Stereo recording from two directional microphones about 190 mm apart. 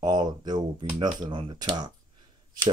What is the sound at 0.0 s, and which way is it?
Speech, 20° right (ahead or behind).